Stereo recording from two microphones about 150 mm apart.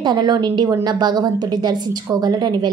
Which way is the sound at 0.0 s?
30° right (ahead or behind).